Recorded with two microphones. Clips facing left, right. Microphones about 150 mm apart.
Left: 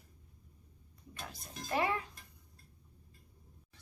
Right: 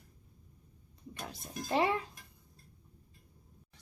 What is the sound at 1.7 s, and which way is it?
Speech, 30° right (ahead or behind).